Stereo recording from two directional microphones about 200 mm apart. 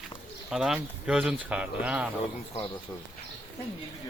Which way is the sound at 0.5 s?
5° right (ahead or behind).